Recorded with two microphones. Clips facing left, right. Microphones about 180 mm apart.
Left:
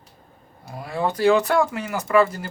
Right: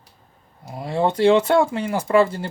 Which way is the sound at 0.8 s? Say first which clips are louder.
Right 4 dB; 25° right (ahead or behind).